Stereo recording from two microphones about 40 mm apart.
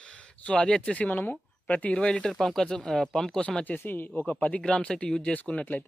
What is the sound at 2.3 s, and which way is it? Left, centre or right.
Speech, centre.